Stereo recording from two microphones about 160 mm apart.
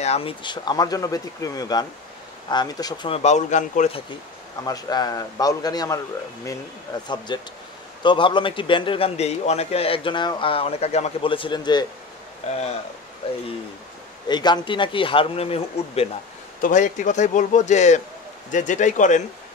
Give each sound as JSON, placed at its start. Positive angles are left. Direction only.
{"t": 0.0, "sound": "speech", "side_deg": 40}
{"t": 3.1, "sound": "a man's voice", "side_deg": 45}
{"t": 4.6, "sound": "a man's voice", "side_deg": 25}
{"t": 12.4, "sound": "a man's voice", "side_deg": 40}
{"t": 14.2, "sound": "a man's voice", "side_deg": 25}
{"t": 16.6, "sound": "a man's voice", "side_deg": 50}